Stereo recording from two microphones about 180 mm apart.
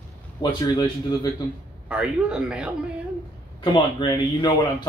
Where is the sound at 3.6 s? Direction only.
25° left (ahead or behind).